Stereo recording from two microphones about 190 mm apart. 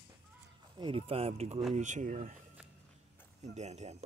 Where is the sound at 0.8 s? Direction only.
30° right (ahead or behind).